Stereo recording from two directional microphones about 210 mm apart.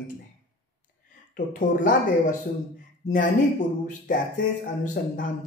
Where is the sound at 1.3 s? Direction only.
40° left (ahead or behind).